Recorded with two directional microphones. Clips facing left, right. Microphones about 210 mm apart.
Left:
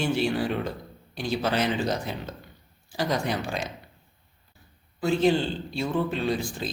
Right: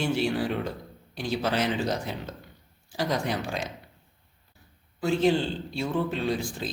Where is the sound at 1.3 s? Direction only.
5° right (ahead or behind).